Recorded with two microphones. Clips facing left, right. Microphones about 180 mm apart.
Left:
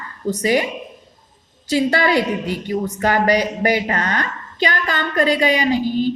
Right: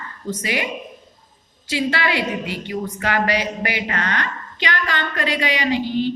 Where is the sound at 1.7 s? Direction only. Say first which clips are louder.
Left 5 dB; 40° left (ahead or behind).